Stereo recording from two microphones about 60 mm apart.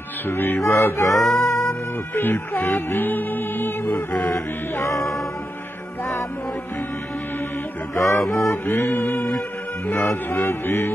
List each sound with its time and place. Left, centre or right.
0.3 s music: left
1.1 s music: centre
1.4 s music: left
1.7 s music: left
4.3 s music: left
7.9 s music: left
8.6 s music: left